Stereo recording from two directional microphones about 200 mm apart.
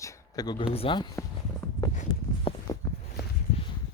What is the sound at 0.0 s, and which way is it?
Speech, 15° left (ahead or behind).